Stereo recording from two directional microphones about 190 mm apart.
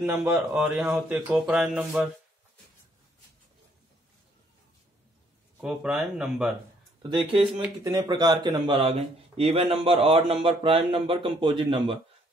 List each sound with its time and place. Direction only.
0.2 s speech: 5° right (ahead or behind)
5.6 s speech: 5° right (ahead or behind)
7.0 s speech: 25° right (ahead or behind)